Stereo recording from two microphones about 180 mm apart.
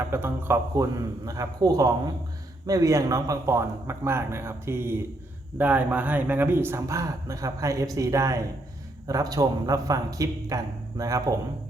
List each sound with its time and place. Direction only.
0.1 s a man's voice: 10° right (ahead or behind)